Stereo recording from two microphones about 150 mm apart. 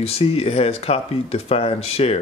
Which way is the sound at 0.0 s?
40° left (ahead or behind).